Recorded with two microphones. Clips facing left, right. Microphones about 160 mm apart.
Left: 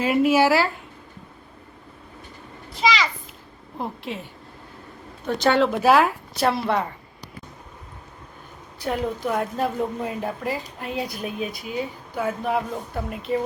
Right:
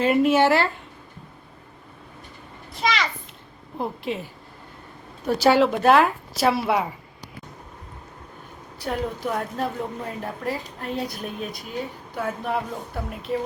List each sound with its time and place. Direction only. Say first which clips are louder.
0.0 s speech: even; 5° left (ahead or behind)
3.8 s speech: right 3 dB; centre (ahead or behind)
8.8 s speech: left 2 dB; centre (ahead or behind)